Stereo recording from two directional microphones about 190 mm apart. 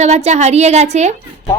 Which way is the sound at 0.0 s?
35° right (ahead or behind).